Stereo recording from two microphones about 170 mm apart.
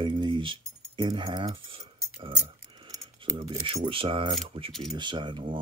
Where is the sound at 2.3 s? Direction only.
25° right (ahead or behind).